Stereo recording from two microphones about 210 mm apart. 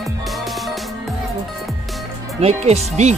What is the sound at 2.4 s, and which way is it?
Speech, 30° right (ahead or behind).